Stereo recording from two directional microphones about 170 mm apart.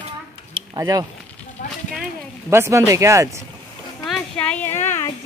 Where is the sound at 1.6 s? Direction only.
55° left (ahead or behind).